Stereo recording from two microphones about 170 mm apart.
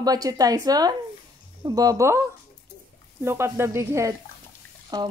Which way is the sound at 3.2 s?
15° right (ahead or behind).